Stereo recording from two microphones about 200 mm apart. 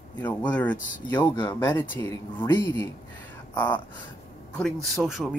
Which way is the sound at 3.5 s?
20° left (ahead or behind).